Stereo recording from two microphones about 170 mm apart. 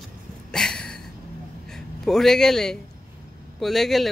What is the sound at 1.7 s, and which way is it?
A man's voice, centre (ahead or behind).